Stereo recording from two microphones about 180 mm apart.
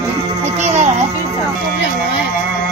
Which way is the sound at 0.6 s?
40° right (ahead or behind).